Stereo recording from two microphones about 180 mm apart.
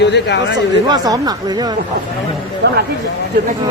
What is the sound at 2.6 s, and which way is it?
Speech, 70° right (ahead or behind).